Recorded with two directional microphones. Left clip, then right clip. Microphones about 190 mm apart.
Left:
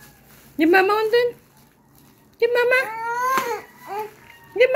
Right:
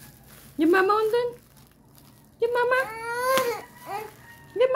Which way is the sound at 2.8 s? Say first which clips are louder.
Left 5 dB; 40° right (ahead or behind).